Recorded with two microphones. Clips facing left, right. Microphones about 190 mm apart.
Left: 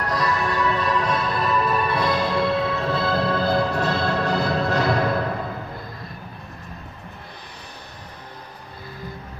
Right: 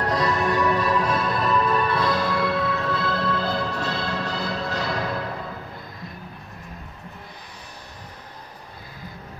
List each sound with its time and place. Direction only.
0.0 s music: 25° right (ahead or behind); by 5.1 s 55° left (ahead or behind)